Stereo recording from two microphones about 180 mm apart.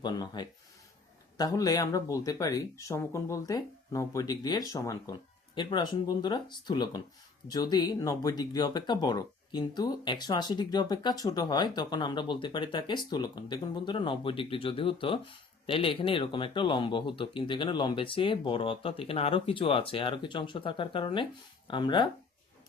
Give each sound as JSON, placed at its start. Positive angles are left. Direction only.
{"t": 0.0, "sound": "speech", "side_deg": 25}